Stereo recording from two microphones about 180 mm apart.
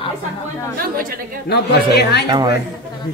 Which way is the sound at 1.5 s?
65° left (ahead or behind).